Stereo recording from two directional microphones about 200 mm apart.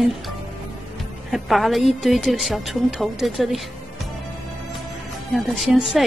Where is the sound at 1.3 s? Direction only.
Centre (ahead or behind).